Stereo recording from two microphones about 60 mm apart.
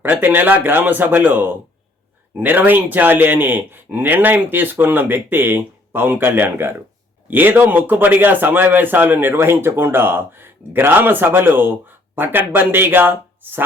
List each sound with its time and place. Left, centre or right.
0.0 s a man's voice: right